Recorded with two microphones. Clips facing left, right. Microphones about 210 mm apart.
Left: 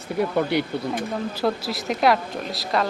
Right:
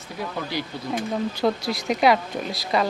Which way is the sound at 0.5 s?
60° left (ahead or behind).